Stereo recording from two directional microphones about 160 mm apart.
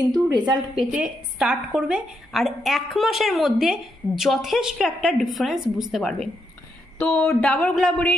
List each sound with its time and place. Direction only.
0.1 s a woman's voice: 25° right (ahead or behind)
0.7 s a woman's voice: 5° right (ahead or behind)